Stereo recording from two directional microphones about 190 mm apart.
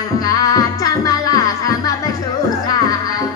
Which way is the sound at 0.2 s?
20° left (ahead or behind).